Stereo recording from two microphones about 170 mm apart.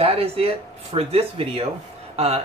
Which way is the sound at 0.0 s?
35° right (ahead or behind).